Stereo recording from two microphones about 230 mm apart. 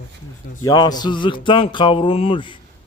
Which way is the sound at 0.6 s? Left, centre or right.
Centre.